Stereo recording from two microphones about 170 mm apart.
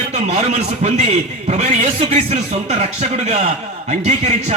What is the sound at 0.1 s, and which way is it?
A man's voice, 40° right (ahead or behind).